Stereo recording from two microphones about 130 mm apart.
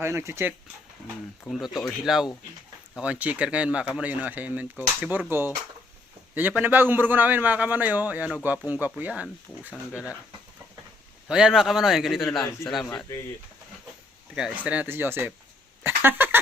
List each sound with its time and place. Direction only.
0.0 s speech: 20° right (ahead or behind)
1.5 s a man's voice: centre (ahead or behind)
11.3 s a man's voice: 5° right (ahead or behind)
14.3 s speech: 10° right (ahead or behind)